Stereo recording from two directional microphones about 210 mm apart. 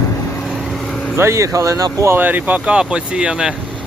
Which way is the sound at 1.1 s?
15° right (ahead or behind).